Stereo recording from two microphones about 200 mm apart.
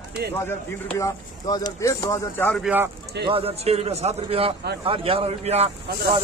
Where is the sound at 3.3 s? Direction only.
30° right (ahead or behind).